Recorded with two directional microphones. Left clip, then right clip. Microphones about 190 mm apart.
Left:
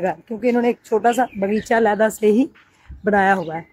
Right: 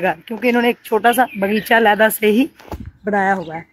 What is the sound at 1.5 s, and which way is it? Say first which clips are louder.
Speech: right 4 dB; 5° right (ahead or behind).